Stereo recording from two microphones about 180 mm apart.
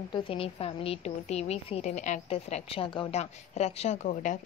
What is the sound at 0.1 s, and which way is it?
A woman's voice, 30° left (ahead or behind).